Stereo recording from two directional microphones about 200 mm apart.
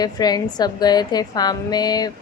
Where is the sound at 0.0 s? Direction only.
20° left (ahead or behind).